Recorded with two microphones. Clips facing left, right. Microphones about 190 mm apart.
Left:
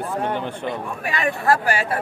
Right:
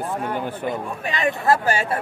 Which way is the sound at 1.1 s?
20° right (ahead or behind).